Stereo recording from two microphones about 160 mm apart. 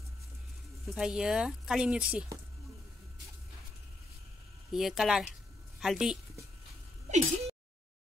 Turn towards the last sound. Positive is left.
turn(degrees=-40)  # may be behind; listen again after turning